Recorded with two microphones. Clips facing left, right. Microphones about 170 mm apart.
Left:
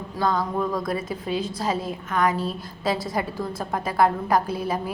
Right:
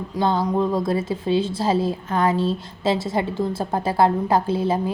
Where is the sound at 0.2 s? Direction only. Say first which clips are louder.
Right 4 dB; 25° right (ahead or behind).